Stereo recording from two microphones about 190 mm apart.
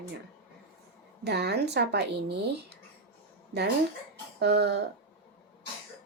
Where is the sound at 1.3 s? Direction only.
60° right (ahead or behind).